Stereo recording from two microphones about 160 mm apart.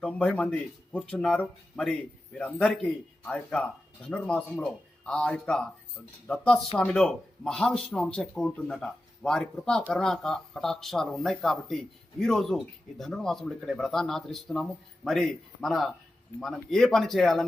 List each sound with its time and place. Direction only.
0.0 s a man's voice: 5° left (ahead or behind)